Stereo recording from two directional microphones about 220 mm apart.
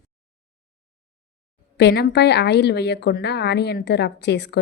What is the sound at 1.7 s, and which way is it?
A woman's voice, 50° left (ahead or behind).